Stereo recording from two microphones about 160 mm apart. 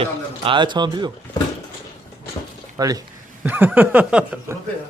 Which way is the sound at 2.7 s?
20° right (ahead or behind).